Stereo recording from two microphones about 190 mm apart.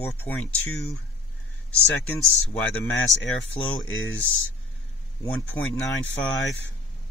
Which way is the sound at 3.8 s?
90° left.